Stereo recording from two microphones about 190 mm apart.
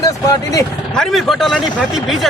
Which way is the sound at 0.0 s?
20° left (ahead or behind).